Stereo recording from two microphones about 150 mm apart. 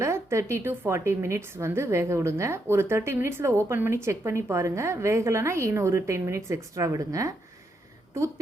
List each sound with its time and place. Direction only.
0.0 s a woman's voice: 20° right (ahead or behind)